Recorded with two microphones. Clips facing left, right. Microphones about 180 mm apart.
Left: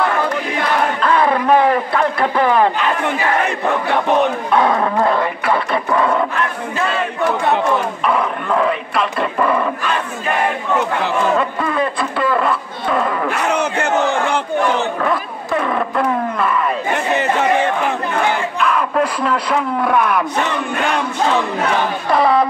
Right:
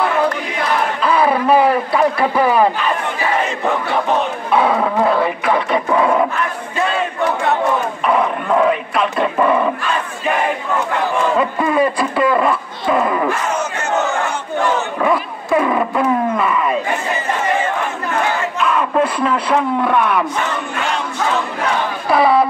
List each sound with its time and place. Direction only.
1.0 s a sound: 10° right (ahead or behind)
4.5 s dog: 10° right (ahead or behind)
8.0 s dog: 5° right (ahead or behind)
11.3 s a sound: 10° right (ahead or behind)
13.3 s battle cry: 65° left (ahead or behind)
15.0 s roaring cats: 10° right (ahead or behind)
17.1 s crowd: 70° left (ahead or behind)
18.6 s crowd: 5° right (ahead or behind)
19.2 s a sound: centre (ahead or behind)
22.1 s music: 5° right (ahead or behind)